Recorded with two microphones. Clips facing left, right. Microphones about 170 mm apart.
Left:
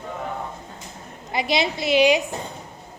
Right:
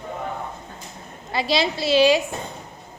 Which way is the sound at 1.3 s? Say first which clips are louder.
Right 1 dB; 20° left (ahead or behind).